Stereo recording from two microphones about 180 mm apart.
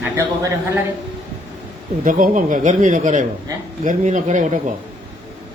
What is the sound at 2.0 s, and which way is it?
Speech, 50° right (ahead or behind).